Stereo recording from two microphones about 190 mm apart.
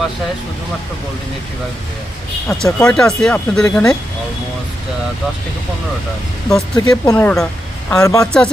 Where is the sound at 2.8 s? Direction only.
5° left (ahead or behind).